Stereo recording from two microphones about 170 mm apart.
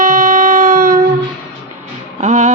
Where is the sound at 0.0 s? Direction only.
50° right (ahead or behind).